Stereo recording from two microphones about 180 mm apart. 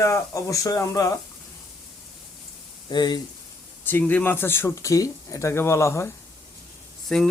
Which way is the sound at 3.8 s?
10° left (ahead or behind).